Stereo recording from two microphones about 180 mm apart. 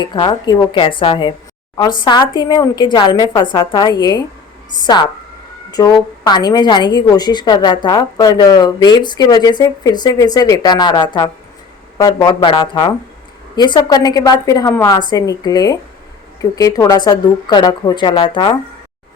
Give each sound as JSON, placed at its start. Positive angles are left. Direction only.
{"t": 0.0, "sound": "a woman's voice", "side_deg": 25}
{"t": 5.7, "sound": "a woman's voice", "side_deg": 20}